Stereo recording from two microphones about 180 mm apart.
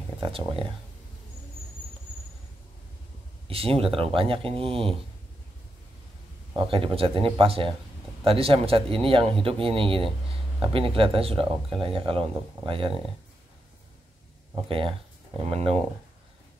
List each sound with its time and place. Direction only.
0.2 s speech: 30° right (ahead or behind)
3.4 s speech: 30° right (ahead or behind)
6.5 s speech: 30° right (ahead or behind)
15.4 s speech: 35° right (ahead or behind)